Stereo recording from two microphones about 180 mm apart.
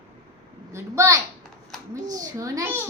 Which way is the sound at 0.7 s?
15° right (ahead or behind).